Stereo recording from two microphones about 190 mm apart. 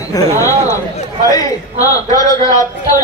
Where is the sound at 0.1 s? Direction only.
20° left (ahead or behind).